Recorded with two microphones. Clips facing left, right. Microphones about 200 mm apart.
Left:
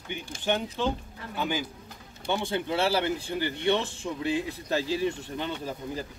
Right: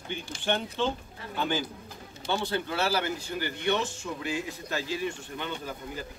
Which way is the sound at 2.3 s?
20° left (ahead or behind).